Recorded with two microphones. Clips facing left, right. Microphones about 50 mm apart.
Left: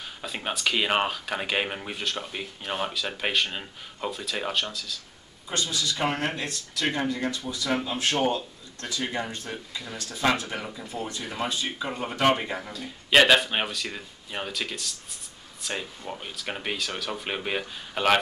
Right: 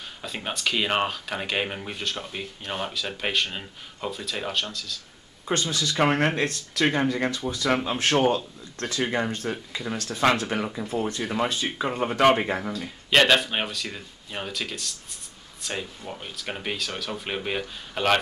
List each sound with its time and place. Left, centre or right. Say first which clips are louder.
0.2 s speech: left 1 dB; centre
5.5 s speech: right 3 dB; right
11.9 s speech: right 6 dB; right
12.7 s speech: left 2 dB; centre